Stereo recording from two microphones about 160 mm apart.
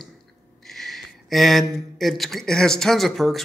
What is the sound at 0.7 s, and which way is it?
Speech, centre (ahead or behind).